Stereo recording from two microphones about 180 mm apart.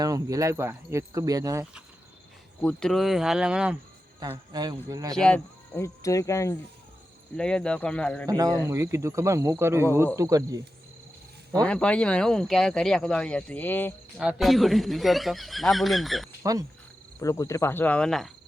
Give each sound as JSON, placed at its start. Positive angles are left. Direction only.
{"t": 0.0, "sound": "speech", "side_deg": -20}
{"t": 2.6, "sound": "speech", "side_deg": 5}
{"t": 4.5, "sound": "speech", "side_deg": -20}
{"t": 5.1, "sound": "speech", "side_deg": 5}
{"t": 7.3, "sound": "speech", "side_deg": 5}
{"t": 8.3, "sound": "speech", "side_deg": -20}
{"t": 11.6, "sound": "speech", "side_deg": 5}
{"t": 14.2, "sound": "speech", "side_deg": 0}
{"t": 16.4, "sound": "cricket", "side_deg": -20}
{"t": 17.2, "sound": "speech", "side_deg": 15}